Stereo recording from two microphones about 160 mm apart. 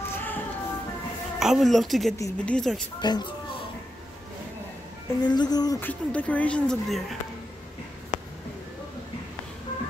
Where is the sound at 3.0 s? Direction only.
25° left (ahead or behind).